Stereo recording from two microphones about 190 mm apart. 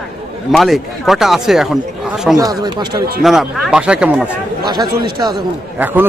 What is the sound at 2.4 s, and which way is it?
Speech, 20° right (ahead or behind).